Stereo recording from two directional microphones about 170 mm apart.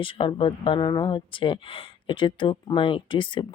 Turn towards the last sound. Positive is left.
turn(degrees=30)  # may be behind; listen again after turning